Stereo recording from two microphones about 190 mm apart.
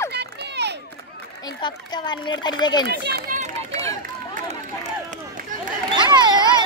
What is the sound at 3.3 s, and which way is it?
Run, 40° right (ahead or behind).